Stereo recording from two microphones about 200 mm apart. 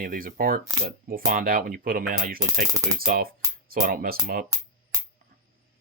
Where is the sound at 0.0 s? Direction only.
45° right (ahead or behind).